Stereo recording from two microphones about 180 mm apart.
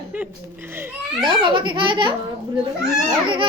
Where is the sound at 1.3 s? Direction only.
25° right (ahead or behind).